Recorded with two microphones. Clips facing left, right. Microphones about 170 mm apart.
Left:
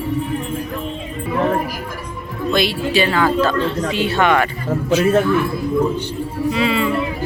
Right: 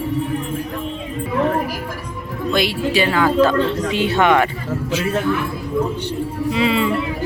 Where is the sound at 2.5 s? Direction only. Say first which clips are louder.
Left 1 dB; 10° right (ahead or behind).